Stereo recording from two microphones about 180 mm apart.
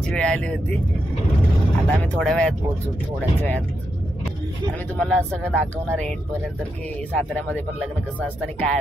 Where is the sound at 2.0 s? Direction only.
5° left (ahead or behind).